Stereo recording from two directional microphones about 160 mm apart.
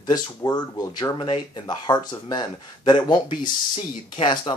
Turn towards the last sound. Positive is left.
turn(degrees=30)  # may be behind; listen again after turning